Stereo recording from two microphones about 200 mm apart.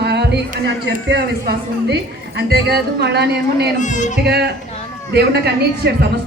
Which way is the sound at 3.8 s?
35° left (ahead or behind).